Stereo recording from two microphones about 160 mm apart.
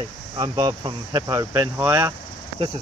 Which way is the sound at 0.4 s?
25° right (ahead or behind).